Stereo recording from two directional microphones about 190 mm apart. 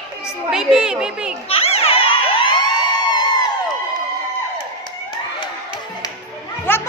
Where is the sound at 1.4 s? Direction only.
30° left (ahead or behind).